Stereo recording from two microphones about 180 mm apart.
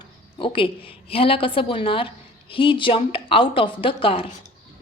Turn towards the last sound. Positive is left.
turn(degrees=30)  # may be behind; listen again after turning